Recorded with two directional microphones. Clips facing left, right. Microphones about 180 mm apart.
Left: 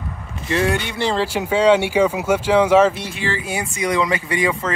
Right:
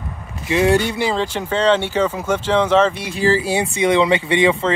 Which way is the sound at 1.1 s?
10° left (ahead or behind).